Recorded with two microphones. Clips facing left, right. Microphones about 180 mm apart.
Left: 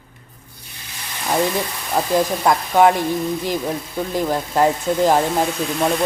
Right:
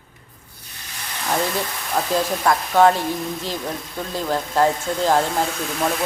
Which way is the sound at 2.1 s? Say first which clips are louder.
Left 3 dB; 15° left (ahead or behind).